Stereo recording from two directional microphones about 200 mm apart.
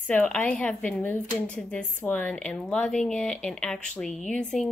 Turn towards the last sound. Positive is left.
turn(degrees=5)  # may be behind; listen again after turning